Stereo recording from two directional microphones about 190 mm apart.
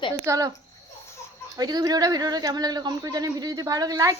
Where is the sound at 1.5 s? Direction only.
20° right (ahead or behind).